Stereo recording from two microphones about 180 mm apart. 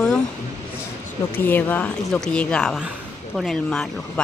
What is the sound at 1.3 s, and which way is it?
Speech, 10° left (ahead or behind).